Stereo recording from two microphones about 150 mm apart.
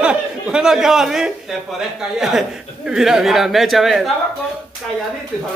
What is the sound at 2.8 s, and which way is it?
A woman's voice, 5° right (ahead or behind).